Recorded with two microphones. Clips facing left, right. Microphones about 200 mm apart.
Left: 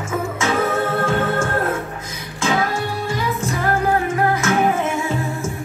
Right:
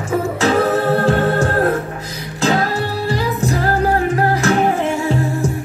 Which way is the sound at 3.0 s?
35° right (ahead or behind).